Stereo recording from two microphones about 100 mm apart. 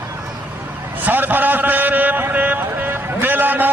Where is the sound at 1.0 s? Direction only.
20° right (ahead or behind).